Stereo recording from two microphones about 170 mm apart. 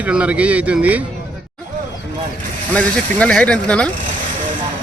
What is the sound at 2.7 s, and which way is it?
Speech, 5° left (ahead or behind).